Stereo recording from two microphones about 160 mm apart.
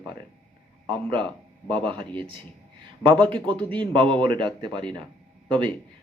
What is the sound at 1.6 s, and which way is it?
Speech, 5° left (ahead or behind).